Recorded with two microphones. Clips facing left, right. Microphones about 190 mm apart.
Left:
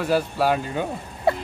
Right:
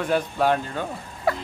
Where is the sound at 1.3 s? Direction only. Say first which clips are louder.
Left 3 dB; 25° left (ahead or behind).